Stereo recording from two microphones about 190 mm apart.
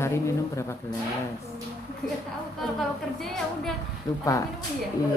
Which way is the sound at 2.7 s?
Centre (ahead or behind).